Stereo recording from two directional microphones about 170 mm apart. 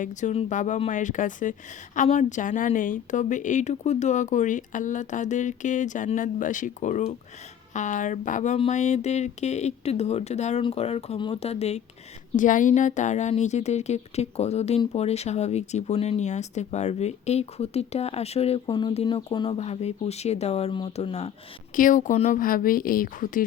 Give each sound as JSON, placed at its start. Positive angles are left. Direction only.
{"t": 0.0, "sound": "a woman's voice", "side_deg": 45}
{"t": 12.4, "sound": "a woman's voice", "side_deg": 50}
{"t": 19.5, "sound": "a woman's voice", "side_deg": 40}
{"t": 21.8, "sound": "a woman's voice", "side_deg": 50}